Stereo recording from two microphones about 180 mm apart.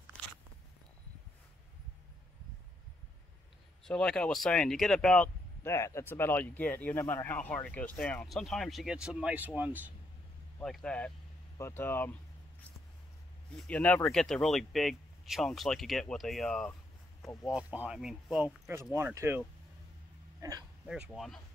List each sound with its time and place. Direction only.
3.8 s speech: 5° left (ahead or behind)
5.6 s speech: 15° left (ahead or behind); by 9.9 s 10° right (ahead or behind)
10.6 s speech: 5° left (ahead or behind)
13.6 s speech: 10° left (ahead or behind)
17.5 s speech: 5° right (ahead or behind)
18.9 s speech: 15° right (ahead or behind)
20.8 s speech: centre (ahead or behind)